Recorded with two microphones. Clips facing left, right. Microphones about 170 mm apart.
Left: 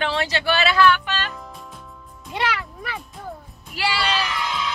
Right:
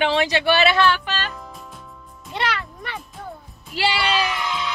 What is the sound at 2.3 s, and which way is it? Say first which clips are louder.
Music: even; 10° left (ahead or behind).